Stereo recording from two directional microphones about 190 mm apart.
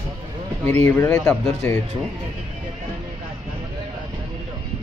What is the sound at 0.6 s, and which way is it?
Speech, 35° right (ahead or behind).